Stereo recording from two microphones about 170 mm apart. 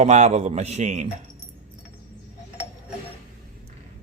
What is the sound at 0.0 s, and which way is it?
A man's voice, 45° right (ahead or behind).